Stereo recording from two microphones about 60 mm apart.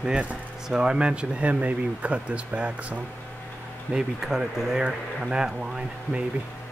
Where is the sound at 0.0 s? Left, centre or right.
Centre.